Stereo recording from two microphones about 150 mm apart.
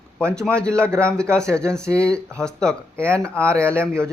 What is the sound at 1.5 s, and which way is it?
Speech, 20° right (ahead or behind).